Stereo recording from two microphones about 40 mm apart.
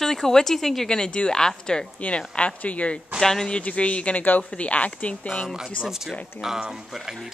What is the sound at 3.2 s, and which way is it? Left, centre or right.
Speech, centre.